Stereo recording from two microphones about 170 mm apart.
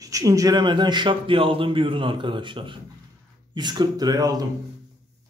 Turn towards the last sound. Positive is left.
turn(degrees=-25)  # may be behind; listen again after turning